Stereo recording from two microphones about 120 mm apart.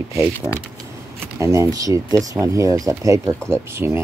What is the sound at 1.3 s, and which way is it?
Speech, 25° right (ahead or behind).